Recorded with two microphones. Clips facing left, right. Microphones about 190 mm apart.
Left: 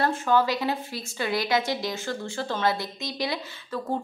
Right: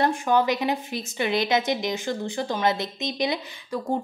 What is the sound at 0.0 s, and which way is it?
A woman's voice, 20° right (ahead or behind).